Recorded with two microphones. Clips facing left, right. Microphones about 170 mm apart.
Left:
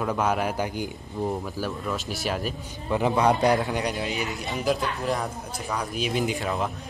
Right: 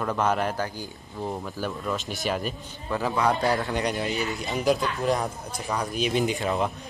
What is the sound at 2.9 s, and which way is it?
Speech, 20° left (ahead or behind).